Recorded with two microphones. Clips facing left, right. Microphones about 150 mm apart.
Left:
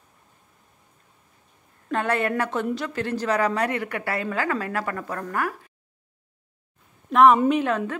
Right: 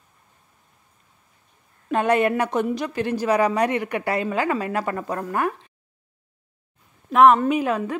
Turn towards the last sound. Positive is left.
turn(degrees=-10)  # may be behind; listen again after turning